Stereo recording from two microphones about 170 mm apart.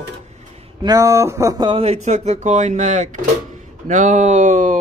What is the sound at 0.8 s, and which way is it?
Speech, 20° right (ahead or behind).